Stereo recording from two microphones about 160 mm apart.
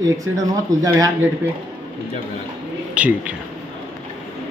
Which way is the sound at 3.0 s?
10° right (ahead or behind).